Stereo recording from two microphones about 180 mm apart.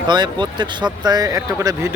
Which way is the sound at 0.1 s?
25° right (ahead or behind).